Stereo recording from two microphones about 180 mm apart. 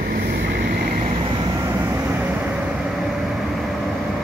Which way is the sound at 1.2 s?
25° right (ahead or behind).